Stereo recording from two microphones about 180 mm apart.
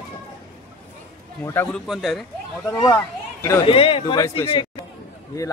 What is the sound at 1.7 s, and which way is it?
Speech, centre (ahead or behind).